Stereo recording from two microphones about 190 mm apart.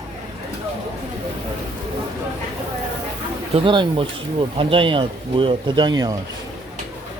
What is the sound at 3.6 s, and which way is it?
Speech, 25° right (ahead or behind).